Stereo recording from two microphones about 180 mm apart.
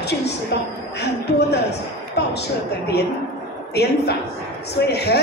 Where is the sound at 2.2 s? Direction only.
70° left (ahead or behind).